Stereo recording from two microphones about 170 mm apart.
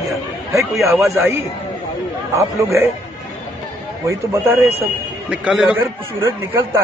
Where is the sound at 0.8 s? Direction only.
15° right (ahead or behind).